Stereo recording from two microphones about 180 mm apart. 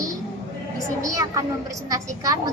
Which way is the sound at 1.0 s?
20° right (ahead or behind).